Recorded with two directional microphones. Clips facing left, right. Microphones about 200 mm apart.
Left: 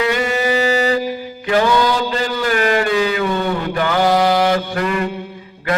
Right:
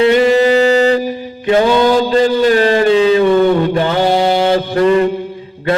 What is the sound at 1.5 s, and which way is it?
Mantra, 25° right (ahead or behind).